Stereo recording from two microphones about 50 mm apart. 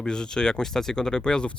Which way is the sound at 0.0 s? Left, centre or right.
Centre.